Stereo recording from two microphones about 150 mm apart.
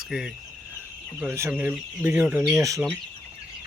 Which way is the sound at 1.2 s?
15° right (ahead or behind).